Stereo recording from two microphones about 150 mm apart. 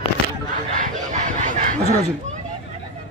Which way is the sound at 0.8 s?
60° right (ahead or behind).